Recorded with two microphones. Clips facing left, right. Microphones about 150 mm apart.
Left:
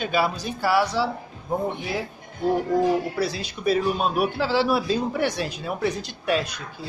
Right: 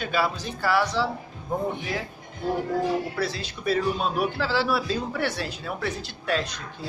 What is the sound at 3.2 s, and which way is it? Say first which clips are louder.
Speech: left 3 dB; 15° left (ahead or behind).